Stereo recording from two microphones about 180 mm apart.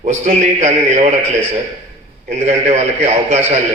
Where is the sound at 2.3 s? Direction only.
40° right (ahead or behind).